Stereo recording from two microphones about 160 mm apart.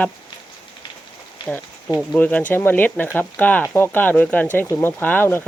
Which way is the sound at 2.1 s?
10° left (ahead or behind).